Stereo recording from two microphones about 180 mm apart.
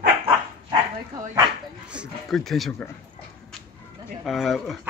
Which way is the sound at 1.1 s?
20° right (ahead or behind).